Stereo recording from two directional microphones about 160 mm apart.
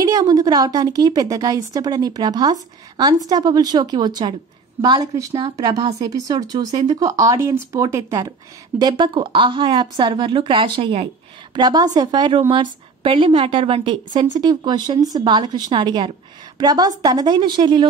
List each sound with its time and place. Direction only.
0.0 s speech: 25° right (ahead or behind)
11.5 s a woman's voice: 25° right (ahead or behind)